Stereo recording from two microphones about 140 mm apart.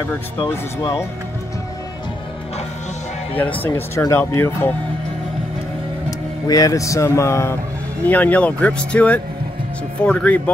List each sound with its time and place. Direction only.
0.5 s speech: 20° left (ahead or behind)
3.3 s speech: 10° left (ahead or behind)
6.0 s speech: 25° left (ahead or behind); by 10.5 s 10° left (ahead or behind)